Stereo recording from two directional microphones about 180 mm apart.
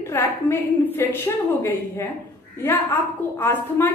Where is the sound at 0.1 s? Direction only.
10° left (ahead or behind).